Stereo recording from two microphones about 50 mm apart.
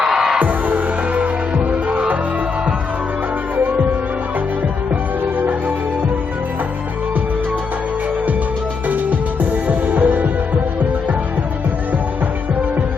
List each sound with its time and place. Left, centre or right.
0.0 s music: centre
0.3 s music: right
3.6 s music: right
5.4 s music: right
8.9 s music: right